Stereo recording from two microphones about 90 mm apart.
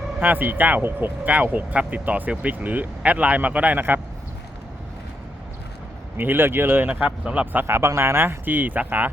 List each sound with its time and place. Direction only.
0.2 s speech: 20° right (ahead or behind)
6.1 s speech: 25° right (ahead or behind)